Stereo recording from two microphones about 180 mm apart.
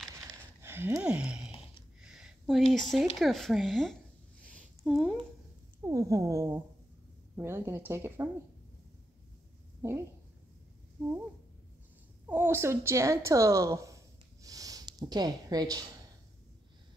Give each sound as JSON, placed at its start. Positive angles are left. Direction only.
{"t": 0.6, "sound": "a sound", "side_deg": -15}
{"t": 2.7, "sound": "speech", "side_deg": 0}
{"t": 5.9, "sound": "speech", "side_deg": -20}
{"t": 9.8, "sound": "a woman's voice", "side_deg": -15}
{"t": 12.3, "sound": "a woman's voice", "side_deg": -10}